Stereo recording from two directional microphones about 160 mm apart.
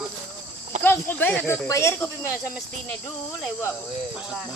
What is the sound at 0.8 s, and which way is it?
Speech, 10° left (ahead or behind).